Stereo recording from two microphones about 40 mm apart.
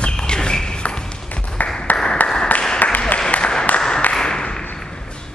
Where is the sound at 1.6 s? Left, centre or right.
Left.